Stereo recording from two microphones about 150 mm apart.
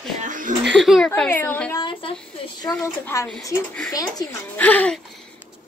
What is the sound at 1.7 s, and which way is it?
A woman's voice, 35° left (ahead or behind).